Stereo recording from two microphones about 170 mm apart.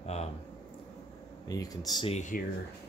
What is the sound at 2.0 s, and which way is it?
Speech, 45° left (ahead or behind).